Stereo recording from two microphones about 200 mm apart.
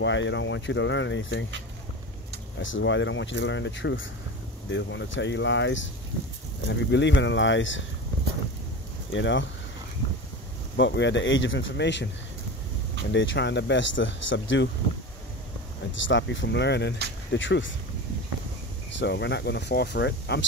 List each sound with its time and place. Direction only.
0.0 s speech: 65° left (ahead or behind)
2.6 s speech: 70° left (ahead or behind)
9.1 s speech: 65° left (ahead or behind)
10.8 s speech: 65° left (ahead or behind)
13.1 s speech: 65° left (ahead or behind)
15.9 s speech: 65° left (ahead or behind)
18.9 s speech: 60° left (ahead or behind)